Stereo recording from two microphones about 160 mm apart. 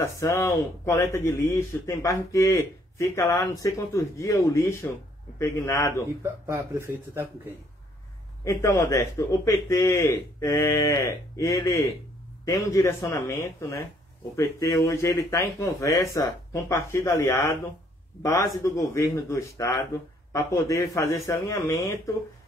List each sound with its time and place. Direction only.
0.0 s speech: 15° left (ahead or behind)
6.2 s speech: 15° right (ahead or behind)
8.5 s speech: 20° left (ahead or behind)